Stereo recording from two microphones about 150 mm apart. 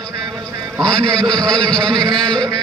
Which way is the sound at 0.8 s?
5° left (ahead or behind).